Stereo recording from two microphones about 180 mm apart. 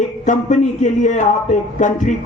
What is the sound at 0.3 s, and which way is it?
Speech, 45° left (ahead or behind).